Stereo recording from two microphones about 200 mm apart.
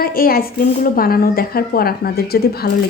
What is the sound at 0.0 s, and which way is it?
Speech, 45° left (ahead or behind).